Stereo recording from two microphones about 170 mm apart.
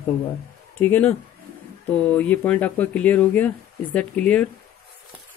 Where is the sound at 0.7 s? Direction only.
10° left (ahead or behind).